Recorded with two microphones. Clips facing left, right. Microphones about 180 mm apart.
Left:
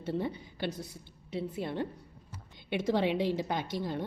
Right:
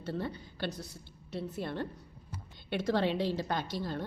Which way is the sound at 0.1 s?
20° left (ahead or behind).